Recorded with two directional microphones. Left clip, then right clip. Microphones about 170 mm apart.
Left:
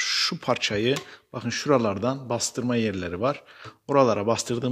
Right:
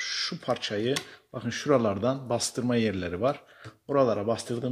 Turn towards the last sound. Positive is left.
turn(degrees=35)  # may be behind; listen again after turning